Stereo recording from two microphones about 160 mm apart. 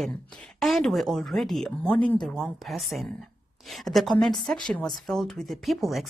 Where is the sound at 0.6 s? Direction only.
Centre (ahead or behind).